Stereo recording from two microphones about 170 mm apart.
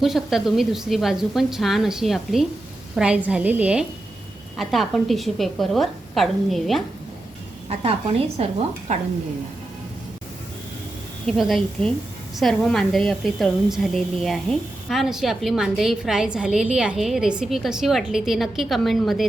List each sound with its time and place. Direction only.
0.0 s a woman's voice: centre (ahead or behind)
7.7 s a woman's voice: 35° right (ahead or behind)
11.3 s a woman's voice: centre (ahead or behind)